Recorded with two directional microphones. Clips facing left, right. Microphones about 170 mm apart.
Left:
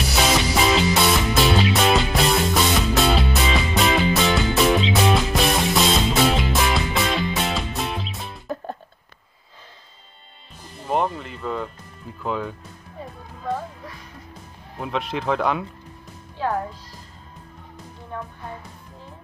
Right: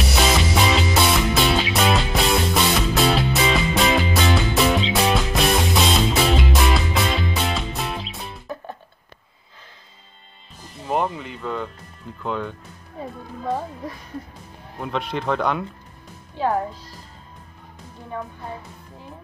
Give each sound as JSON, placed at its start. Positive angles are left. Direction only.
{"t": 0.1, "sound": "music", "side_deg": 0}
{"t": 10.8, "sound": "music", "side_deg": 0}
{"t": 12.2, "sound": "speech", "side_deg": 5}
{"t": 14.8, "sound": "speech", "side_deg": 0}